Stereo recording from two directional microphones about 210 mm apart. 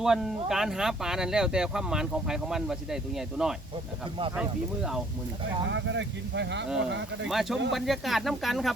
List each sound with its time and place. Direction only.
0.0 s speech: centre (ahead or behind)
5.7 s speech: 60° right (ahead or behind)
7.3 s speech: centre (ahead or behind)